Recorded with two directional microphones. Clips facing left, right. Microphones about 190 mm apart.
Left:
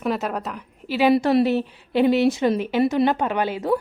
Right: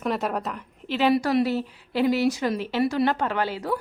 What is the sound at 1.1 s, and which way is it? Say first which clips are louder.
A woman's voice: left 5 dB; 25° left (ahead or behind).